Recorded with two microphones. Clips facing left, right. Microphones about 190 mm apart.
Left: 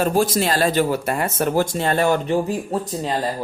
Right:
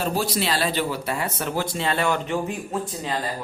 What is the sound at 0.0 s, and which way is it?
Speech, 50° left (ahead or behind).